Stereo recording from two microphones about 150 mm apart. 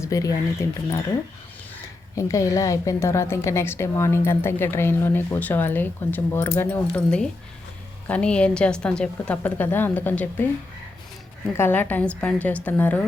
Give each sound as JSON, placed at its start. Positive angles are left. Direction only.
{"t": 0.0, "sound": "speech", "side_deg": 20}
{"t": 2.1, "sound": "a woman's voice", "side_deg": 20}
{"t": 11.5, "sound": "a woman's voice", "side_deg": 15}